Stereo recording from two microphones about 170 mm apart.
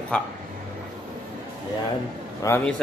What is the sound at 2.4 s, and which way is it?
Speech, 20° left (ahead or behind).